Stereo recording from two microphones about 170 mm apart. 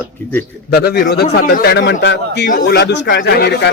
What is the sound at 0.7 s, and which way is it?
A man's voice, 70° left (ahead or behind).